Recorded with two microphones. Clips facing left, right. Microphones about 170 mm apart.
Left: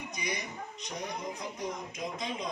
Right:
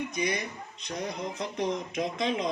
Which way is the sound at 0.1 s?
65° right (ahead or behind).